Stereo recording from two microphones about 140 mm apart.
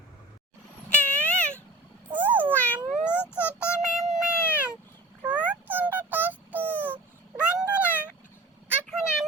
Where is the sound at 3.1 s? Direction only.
15° left (ahead or behind).